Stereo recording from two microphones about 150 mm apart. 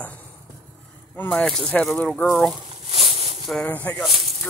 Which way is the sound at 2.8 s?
40° right (ahead or behind).